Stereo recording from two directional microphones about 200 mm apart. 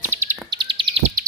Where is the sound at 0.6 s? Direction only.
25° right (ahead or behind).